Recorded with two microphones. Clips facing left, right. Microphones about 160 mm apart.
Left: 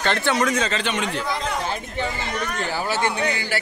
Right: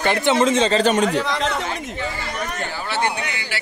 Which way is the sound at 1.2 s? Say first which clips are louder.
Right 2 dB; 85° right.